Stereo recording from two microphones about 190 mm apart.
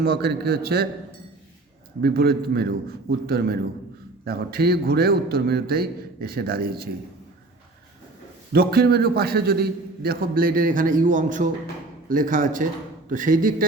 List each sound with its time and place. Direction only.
0.0 s a man's voice: 55° right (ahead or behind)
2.0 s a man's voice: 55° right (ahead or behind)
8.5 s a man's voice: 55° right (ahead or behind)